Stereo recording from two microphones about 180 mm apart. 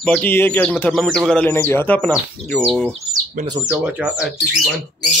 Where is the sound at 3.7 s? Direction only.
5° right (ahead or behind).